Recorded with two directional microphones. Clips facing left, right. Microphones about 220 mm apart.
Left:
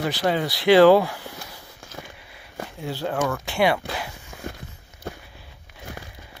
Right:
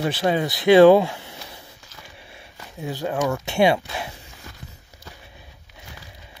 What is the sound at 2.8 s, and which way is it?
Speech, 15° right (ahead or behind).